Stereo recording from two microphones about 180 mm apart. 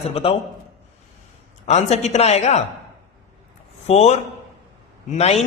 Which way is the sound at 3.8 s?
35° left (ahead or behind).